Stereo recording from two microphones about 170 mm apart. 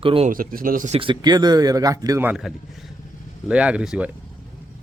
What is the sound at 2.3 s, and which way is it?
Speech, centre (ahead or behind).